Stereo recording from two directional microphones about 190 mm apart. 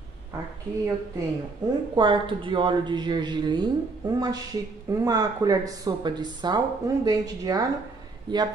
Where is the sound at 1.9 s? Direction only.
25° right (ahead or behind).